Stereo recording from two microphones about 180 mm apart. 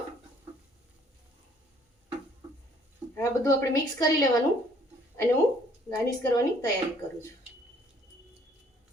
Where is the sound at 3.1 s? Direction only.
15° left (ahead or behind).